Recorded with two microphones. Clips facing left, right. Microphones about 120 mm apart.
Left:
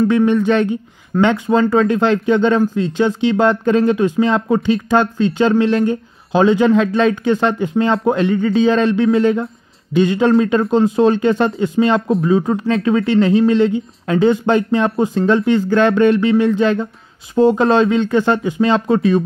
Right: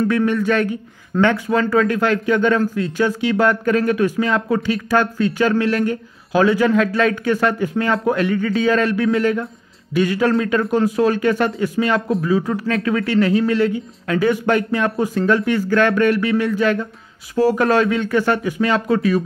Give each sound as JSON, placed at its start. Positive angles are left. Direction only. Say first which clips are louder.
{"t": 0.1, "sound": "speech", "louder": "left 4 dB", "side_deg": 20}